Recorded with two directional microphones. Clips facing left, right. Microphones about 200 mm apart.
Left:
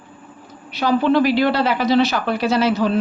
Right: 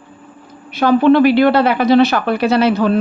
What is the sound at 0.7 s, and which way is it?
Speech, 55° right (ahead or behind).